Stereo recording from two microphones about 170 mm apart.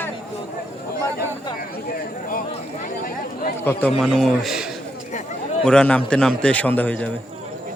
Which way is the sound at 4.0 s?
Centre (ahead or behind).